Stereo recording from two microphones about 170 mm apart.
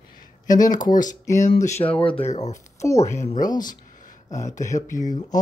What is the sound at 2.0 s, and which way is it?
Speech, 35° left (ahead or behind).